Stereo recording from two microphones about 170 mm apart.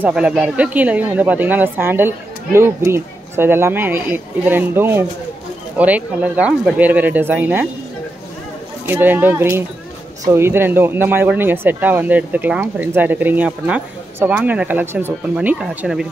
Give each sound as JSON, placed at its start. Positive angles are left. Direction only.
{"t": 0.0, "sound": "speech", "side_deg": -5}
{"t": 8.8, "sound": "speech", "side_deg": -10}